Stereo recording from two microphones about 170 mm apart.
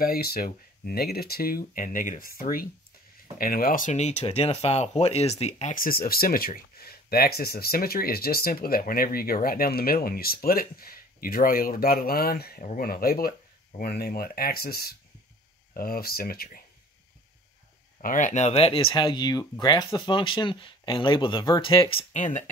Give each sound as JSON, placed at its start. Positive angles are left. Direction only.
{"t": 0.0, "sound": "speech", "side_deg": 60}
{"t": 18.0, "sound": "speech", "side_deg": 50}
{"t": 22.1, "sound": "speech", "side_deg": 50}